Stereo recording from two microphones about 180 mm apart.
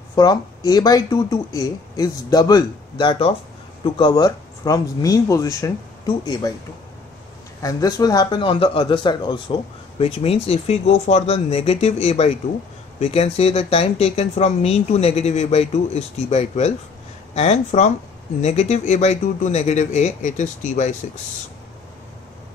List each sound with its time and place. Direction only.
0.1 s speech: 20° left (ahead or behind)
7.6 s a man's voice: 20° left (ahead or behind); by 20.9 s 40° left (ahead or behind)